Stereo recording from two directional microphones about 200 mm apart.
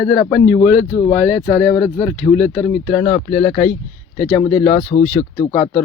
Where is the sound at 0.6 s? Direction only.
25° left (ahead or behind).